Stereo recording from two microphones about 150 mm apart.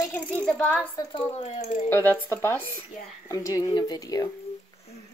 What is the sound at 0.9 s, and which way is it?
Speech, 25° left (ahead or behind).